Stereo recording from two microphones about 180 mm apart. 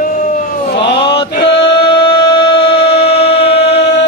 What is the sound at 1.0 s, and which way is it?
Male singing, 30° left (ahead or behind).